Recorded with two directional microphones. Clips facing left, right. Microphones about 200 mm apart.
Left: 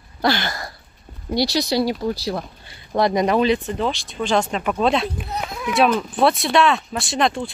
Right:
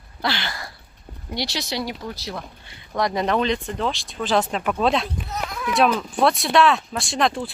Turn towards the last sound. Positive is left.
turn(degrees=0)  # may be behind; listen again after turning